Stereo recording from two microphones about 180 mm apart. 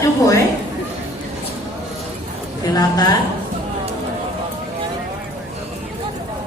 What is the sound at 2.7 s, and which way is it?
Speech, 20° left (ahead or behind).